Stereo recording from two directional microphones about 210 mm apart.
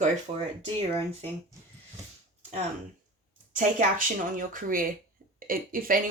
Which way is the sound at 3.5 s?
40° right (ahead or behind).